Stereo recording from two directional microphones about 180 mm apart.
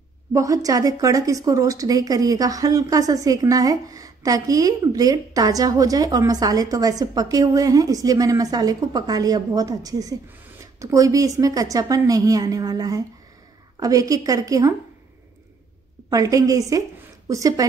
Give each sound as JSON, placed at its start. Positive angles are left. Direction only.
{"t": 0.3, "sound": "speech", "side_deg": -20}
{"t": 16.1, "sound": "speech", "side_deg": -20}